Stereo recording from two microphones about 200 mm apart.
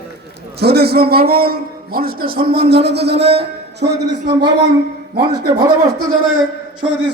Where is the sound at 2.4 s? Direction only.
30° right (ahead or behind).